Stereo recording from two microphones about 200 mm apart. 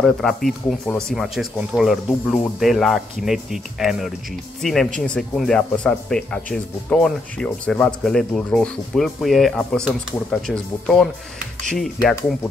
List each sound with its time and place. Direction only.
0.0 s speech: centre (ahead or behind)